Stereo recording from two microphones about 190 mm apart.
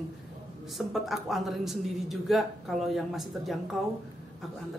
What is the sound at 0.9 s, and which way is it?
A man's voice, centre (ahead or behind).